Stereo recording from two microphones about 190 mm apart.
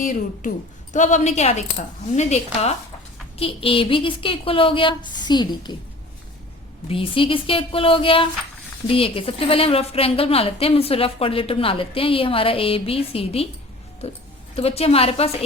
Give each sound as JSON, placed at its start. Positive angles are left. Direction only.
{"t": 0.0, "sound": "a woman's voice", "side_deg": 45}
{"t": 6.8, "sound": "a woman's voice", "side_deg": 30}
{"t": 14.5, "sound": "a woman's voice", "side_deg": 30}